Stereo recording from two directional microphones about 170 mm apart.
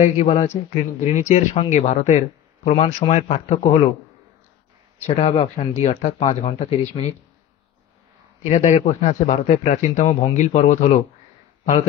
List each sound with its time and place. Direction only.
0.0 s speech: 40° left (ahead or behind)
5.0 s speech: 35° left (ahead or behind)
8.5 s a man's voice: 40° left (ahead or behind)